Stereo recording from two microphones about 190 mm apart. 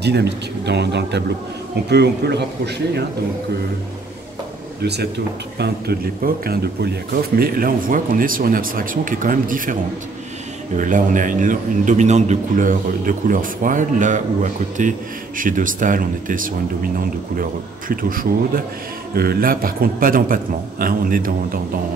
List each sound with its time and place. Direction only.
0.0 s speech: 60° right (ahead or behind)
5.6 s a man's voice: 55° right (ahead or behind)
10.8 s a man's voice: 45° right (ahead or behind)